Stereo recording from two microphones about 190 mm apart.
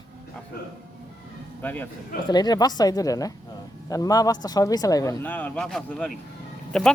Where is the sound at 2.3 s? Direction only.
20° left (ahead or behind); by 6.1 s centre (ahead or behind).